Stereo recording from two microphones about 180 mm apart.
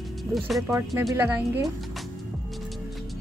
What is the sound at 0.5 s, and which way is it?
A woman's voice, 15° right (ahead or behind).